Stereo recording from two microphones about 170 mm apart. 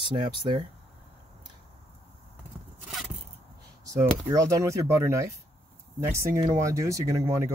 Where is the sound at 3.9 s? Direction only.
20° right (ahead or behind).